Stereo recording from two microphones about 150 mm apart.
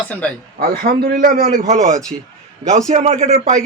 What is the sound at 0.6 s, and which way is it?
Speech, 85° right.